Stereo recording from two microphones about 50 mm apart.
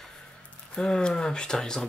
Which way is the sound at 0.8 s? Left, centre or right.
Centre.